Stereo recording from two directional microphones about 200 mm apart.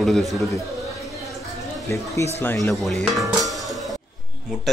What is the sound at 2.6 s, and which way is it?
Dishes, centre (ahead or behind).